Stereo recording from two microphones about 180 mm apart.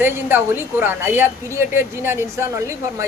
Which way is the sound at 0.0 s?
10° right (ahead or behind).